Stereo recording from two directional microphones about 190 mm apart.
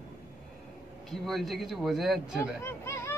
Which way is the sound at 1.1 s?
Centre (ahead or behind).